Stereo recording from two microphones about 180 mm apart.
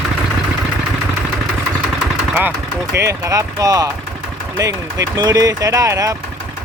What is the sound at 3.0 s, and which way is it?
Speech, 15° right (ahead or behind).